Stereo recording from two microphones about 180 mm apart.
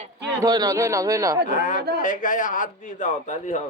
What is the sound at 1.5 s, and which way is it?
A man's voice, 45° left (ahead or behind).